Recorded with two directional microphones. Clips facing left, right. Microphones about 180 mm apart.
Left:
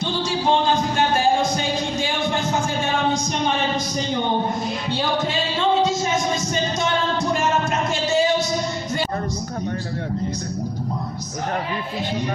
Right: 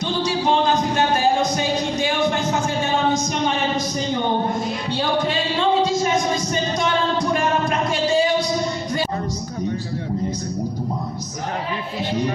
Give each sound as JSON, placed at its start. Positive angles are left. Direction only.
{"t": 5.8, "sound": "music", "side_deg": 25}